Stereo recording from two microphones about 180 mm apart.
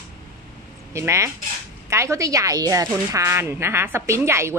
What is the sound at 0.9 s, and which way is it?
A woman's voice, 15° right (ahead or behind).